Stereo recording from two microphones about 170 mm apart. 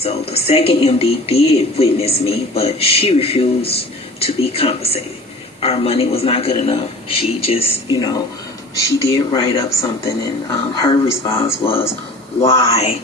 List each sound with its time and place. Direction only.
0.0 s speech: 35° left (ahead or behind)
7.9 s speech: 25° left (ahead or behind)
12.6 s speech: 35° left (ahead or behind)